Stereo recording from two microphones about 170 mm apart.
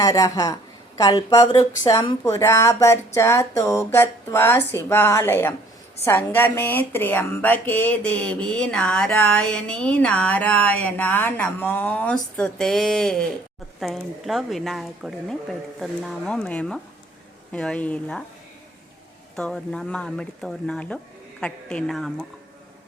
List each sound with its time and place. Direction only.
0.0 s a woman's voice: 20° left (ahead or behind)
19.4 s a woman's voice: 5° left (ahead or behind)